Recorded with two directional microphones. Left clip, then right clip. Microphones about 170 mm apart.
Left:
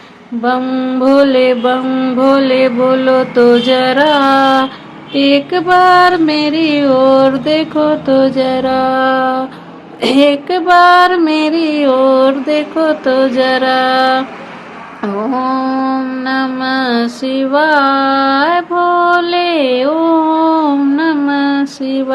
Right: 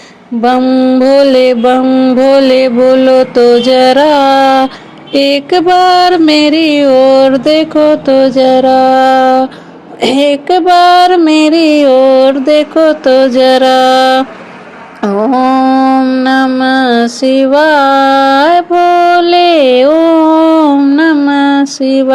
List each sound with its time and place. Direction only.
0.6 s mantra: 25° right (ahead or behind)
15.0 s music: 25° right (ahead or behind)
15.4 s mantra: 30° right (ahead or behind)